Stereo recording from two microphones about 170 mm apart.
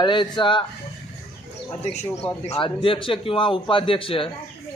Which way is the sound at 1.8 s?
35° left (ahead or behind).